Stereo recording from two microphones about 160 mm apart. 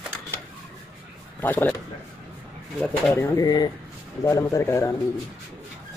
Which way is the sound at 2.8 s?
10° left (ahead or behind).